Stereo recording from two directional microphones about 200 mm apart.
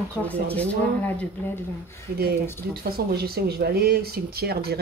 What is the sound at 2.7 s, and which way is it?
Speech, 50° right (ahead or behind).